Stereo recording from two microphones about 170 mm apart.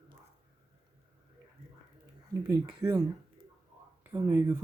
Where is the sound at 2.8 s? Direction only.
20° right (ahead or behind).